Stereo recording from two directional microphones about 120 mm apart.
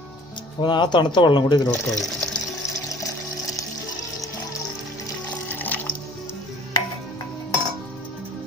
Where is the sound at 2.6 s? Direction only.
25° left (ahead or behind).